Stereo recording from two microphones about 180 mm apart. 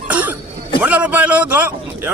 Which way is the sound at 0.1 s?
10° right (ahead or behind).